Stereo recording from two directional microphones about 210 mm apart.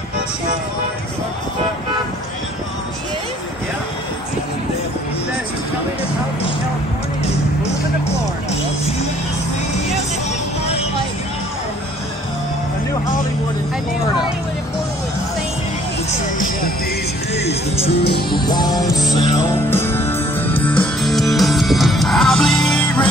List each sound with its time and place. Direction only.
16.3 s music: 40° left (ahead or behind)
18.3 s music: 20° left (ahead or behind); by 23.0 s centre (ahead or behind)